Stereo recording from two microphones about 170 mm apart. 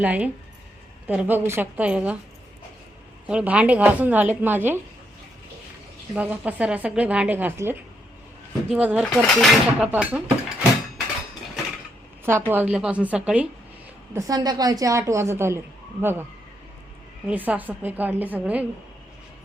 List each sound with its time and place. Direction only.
0.0 s a woman's voice: 10° right (ahead or behind)
3.2 s a woman's voice: 5° right (ahead or behind)
6.1 s a woman's voice: 10° right (ahead or behind)
12.2 s a woman's voice: 15° right (ahead or behind)
14.1 s a woman's voice: 20° right (ahead or behind)
17.2 s a woman's voice: 10° right (ahead or behind)